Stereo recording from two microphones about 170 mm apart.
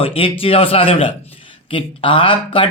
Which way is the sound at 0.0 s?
30° left (ahead or behind).